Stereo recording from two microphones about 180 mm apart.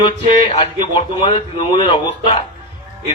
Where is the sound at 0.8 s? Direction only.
25° left (ahead or behind).